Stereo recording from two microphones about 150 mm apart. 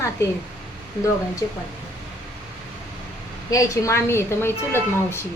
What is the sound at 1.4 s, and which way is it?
Speech, 20° left (ahead or behind).